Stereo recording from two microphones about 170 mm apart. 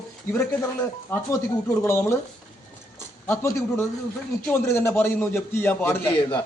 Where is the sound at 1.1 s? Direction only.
10° left (ahead or behind).